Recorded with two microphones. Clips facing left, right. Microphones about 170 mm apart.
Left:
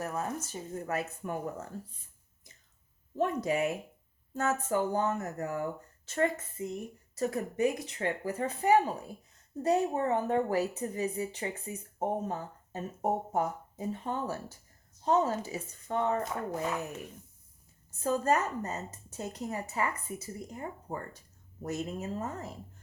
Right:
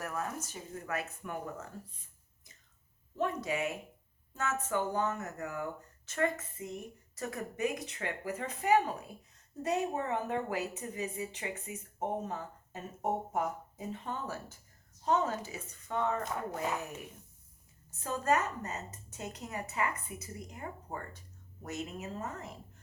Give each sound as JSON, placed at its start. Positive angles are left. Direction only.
{"t": 0.0, "sound": "a woman's voice", "side_deg": 25}
{"t": 3.2, "sound": "a woman's voice", "side_deg": 35}
{"t": 18.0, "sound": "a woman's voice", "side_deg": 35}